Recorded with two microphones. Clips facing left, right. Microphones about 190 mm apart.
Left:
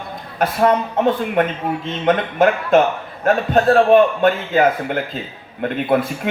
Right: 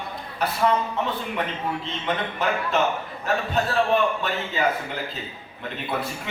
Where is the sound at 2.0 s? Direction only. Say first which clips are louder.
Left 11 dB; 90° left.